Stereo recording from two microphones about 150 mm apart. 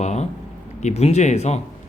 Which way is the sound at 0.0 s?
50° left (ahead or behind).